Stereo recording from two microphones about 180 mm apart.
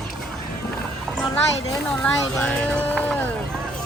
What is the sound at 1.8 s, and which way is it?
Speech, 5° left (ahead or behind).